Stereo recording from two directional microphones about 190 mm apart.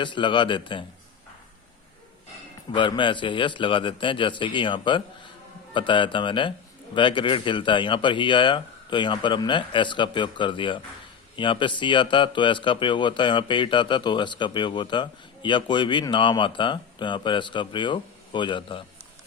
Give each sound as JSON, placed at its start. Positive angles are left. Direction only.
{"t": 0.0, "sound": "a man's voice", "side_deg": 25}
{"t": 2.7, "sound": "a man's voice", "side_deg": 25}